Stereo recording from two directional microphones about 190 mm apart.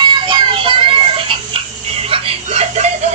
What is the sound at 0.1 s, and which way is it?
Music, 25° right (ahead or behind).